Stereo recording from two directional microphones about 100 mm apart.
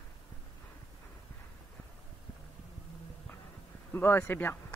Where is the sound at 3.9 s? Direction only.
20° left (ahead or behind).